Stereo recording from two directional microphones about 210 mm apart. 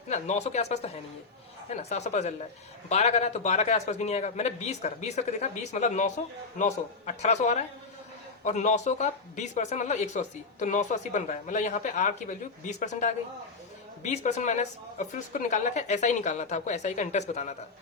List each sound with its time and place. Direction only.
0.1 s speech: 35° left (ahead or behind)